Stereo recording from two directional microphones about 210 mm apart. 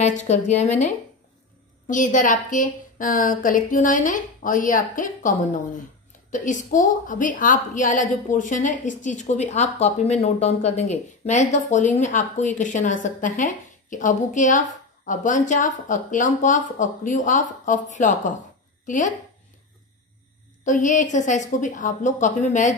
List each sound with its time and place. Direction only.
0.0 s a woman's voice: 35° left (ahead or behind)
20.6 s a woman's voice: 35° left (ahead or behind)